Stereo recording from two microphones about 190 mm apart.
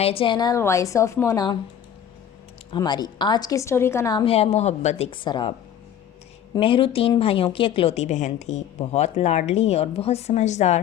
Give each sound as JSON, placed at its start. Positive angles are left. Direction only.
{"t": 0.0, "sound": "a woman's voice", "side_deg": 30}
{"t": 2.7, "sound": "a woman's voice", "side_deg": 25}